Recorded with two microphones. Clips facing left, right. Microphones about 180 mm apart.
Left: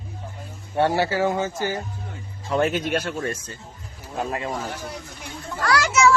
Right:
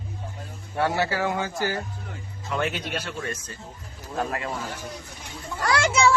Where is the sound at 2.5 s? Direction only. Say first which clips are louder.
Left 6 dB; 35° left (ahead or behind).